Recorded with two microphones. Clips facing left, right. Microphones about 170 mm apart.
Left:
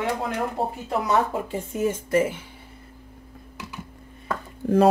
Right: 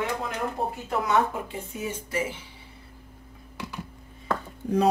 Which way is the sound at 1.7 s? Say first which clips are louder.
Left 9 dB; 50° left (ahead or behind).